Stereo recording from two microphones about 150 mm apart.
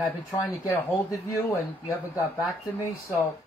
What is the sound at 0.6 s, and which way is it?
Speech, 20° left (ahead or behind).